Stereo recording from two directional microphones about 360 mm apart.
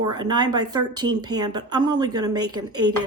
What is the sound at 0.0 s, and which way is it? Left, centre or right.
A woman's voice, centre.